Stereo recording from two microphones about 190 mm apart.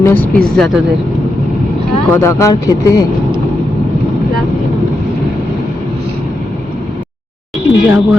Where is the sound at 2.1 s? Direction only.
15° left (ahead or behind).